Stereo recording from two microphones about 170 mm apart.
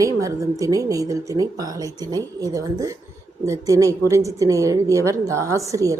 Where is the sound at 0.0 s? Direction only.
20° right (ahead or behind).